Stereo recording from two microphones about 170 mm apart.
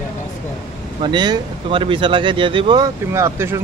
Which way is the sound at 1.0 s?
25° right (ahead or behind).